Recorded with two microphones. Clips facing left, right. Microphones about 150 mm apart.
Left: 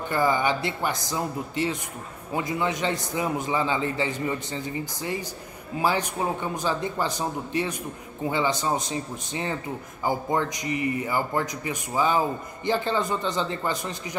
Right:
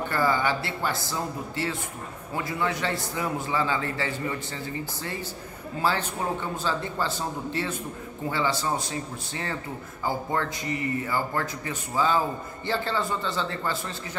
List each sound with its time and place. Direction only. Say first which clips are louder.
0.1 s a man's voice: left 3 dB; 15° left (ahead or behind)